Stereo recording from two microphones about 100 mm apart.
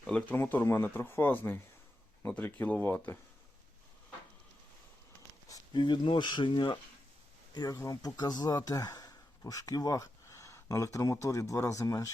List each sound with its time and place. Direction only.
0.1 s speech: 10° left (ahead or behind)
0.3 s speech: 20° left (ahead or behind)
5.5 s speech: 45° left (ahead or behind)